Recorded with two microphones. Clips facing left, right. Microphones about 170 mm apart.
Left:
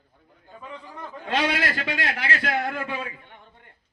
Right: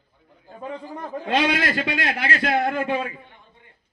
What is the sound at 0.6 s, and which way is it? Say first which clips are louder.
Speech: right 7 dB; 40° right (ahead or behind).